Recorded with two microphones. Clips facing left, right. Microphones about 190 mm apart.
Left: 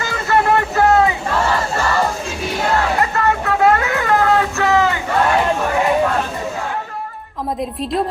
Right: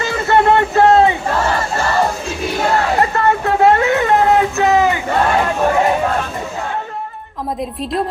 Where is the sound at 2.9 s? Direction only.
30° right (ahead or behind).